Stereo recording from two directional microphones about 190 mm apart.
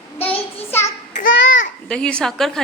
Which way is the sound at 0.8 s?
40° left (ahead or behind).